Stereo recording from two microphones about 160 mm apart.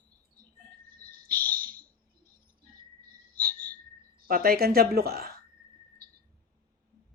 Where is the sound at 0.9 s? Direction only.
65° right (ahead or behind).